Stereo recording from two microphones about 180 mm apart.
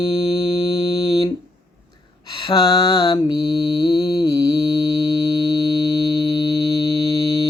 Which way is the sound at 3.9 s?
20° left (ahead or behind).